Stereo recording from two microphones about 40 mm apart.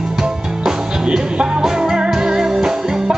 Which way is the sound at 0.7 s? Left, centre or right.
Centre.